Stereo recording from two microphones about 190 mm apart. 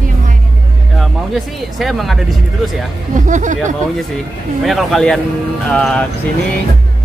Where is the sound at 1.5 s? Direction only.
Centre (ahead or behind).